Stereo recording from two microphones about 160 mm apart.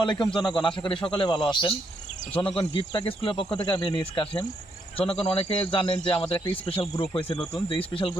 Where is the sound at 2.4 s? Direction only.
35° left (ahead or behind).